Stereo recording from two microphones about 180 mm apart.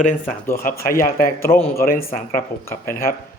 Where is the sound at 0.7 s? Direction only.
55° left (ahead or behind).